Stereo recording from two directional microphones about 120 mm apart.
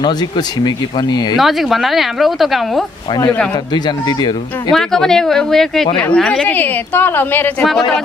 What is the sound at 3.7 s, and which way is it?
Speech, 35° left (ahead or behind).